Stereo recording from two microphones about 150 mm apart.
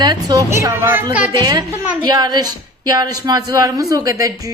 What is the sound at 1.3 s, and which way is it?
A child's voice, 30° right (ahead or behind).